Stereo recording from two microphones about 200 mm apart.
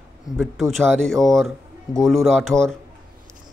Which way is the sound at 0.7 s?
5° left (ahead or behind).